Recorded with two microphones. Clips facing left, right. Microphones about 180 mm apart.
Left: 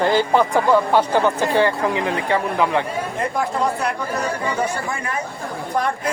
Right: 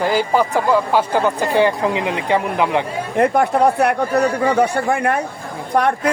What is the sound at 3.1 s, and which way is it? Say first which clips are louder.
A man's voice: right 9 dB; 65° right (ahead or behind).